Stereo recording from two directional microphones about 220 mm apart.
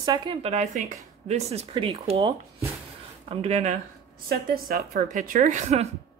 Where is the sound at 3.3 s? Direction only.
30° right (ahead or behind).